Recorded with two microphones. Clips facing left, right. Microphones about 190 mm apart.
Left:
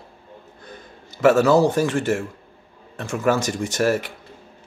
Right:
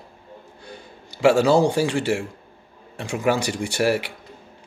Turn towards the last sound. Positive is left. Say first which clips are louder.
# left 1 dB
turn(degrees=-10)  # may be behind; listen again after turning